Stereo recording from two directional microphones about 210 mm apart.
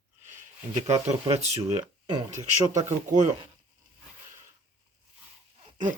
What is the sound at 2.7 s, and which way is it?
Speech, 35° right (ahead or behind).